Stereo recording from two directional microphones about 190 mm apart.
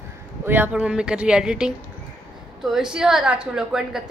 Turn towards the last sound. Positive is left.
turn(degrees=-5)  # may be behind; listen again after turning